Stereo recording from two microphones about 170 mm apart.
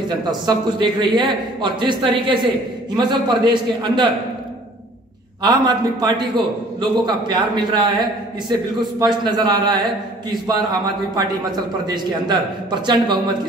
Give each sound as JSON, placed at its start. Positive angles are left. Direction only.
{"t": 0.3, "sound": "a man's voice", "side_deg": -25}
{"t": 5.4, "sound": "a man's voice", "side_deg": -25}